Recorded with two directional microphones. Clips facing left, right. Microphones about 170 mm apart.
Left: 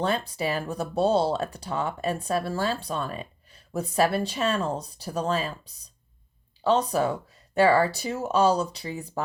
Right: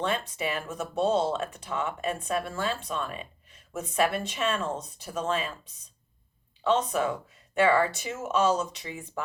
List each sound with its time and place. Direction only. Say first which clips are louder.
0.0 s speech: left 3 dB; 35° left (ahead or behind)